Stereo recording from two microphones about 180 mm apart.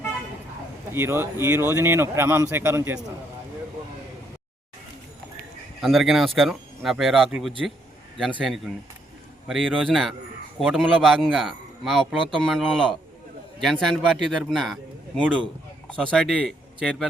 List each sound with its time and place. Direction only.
0.9 s a man's voice: 15° right (ahead or behind)
5.8 s a man's voice: centre (ahead or behind)